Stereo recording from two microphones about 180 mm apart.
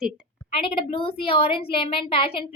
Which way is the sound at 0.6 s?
30° left (ahead or behind).